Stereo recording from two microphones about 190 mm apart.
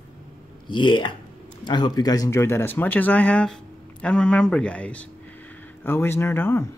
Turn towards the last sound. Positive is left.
turn(degrees=10)  # may be behind; listen again after turning